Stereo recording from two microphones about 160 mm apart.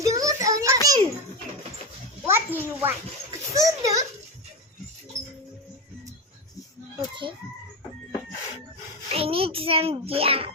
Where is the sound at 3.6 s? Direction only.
20° right (ahead or behind).